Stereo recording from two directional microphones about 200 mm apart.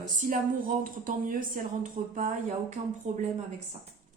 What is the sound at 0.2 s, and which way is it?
A woman's voice, 45° right (ahead or behind).